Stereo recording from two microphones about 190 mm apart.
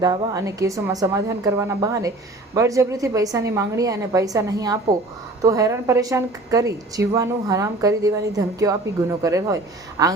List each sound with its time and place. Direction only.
0.0 s a woman's voice: 20° right (ahead or behind)